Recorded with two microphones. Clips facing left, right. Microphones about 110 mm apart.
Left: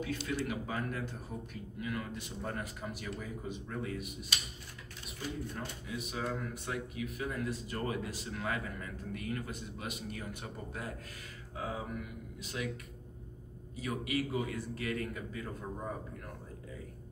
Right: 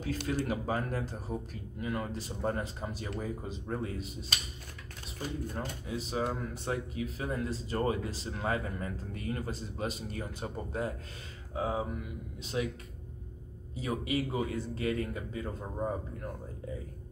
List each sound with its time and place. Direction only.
0.5 s a man's voice: 35° right (ahead or behind)
13.7 s a man's voice: 30° right (ahead or behind)